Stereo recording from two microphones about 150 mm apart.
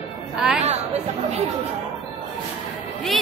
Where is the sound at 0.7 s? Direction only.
45° right (ahead or behind).